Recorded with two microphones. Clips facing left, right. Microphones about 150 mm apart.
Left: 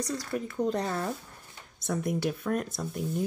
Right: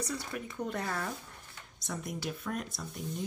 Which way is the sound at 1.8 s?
55° left (ahead or behind).